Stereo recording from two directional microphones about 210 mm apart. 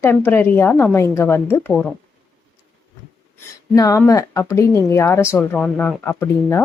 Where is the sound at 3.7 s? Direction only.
15° left (ahead or behind).